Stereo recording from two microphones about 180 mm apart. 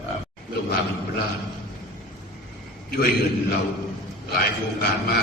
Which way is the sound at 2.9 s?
60° left (ahead or behind).